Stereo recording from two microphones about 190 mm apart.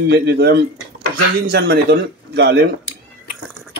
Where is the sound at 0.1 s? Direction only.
60° right (ahead or behind).